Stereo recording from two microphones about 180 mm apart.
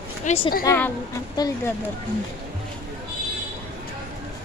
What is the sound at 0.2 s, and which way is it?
Speech, 35° left (ahead or behind).